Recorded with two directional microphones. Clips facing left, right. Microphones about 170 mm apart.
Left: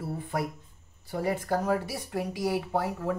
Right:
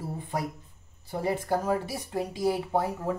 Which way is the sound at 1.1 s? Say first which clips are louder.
Right 1 dB; 25° right (ahead or behind).